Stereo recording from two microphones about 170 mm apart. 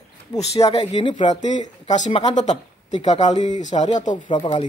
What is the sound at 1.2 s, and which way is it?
Speech, 45° left (ahead or behind).